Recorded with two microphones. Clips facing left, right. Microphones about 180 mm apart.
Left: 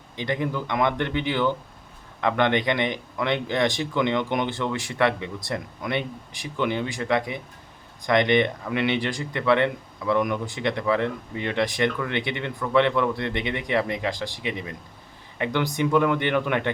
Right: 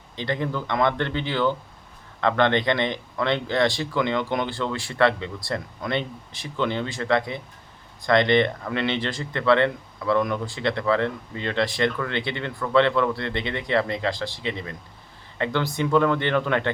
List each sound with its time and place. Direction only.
0.2 s speech: 15° left (ahead or behind)